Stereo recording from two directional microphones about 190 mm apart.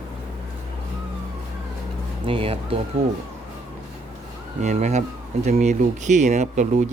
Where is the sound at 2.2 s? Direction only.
30° right (ahead or behind).